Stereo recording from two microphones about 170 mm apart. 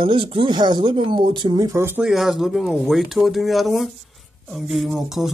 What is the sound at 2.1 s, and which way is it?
Speech, centre (ahead or behind).